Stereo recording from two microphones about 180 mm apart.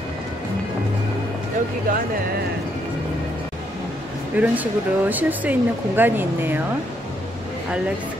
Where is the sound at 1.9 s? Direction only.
50° right (ahead or behind).